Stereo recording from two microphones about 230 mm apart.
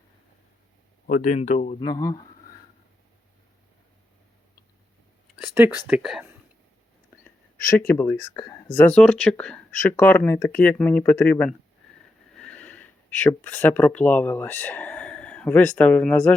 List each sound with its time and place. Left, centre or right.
1.0 s speech: left
1.8 s speech: centre
5.9 s speech: centre
7.8 s speech: centre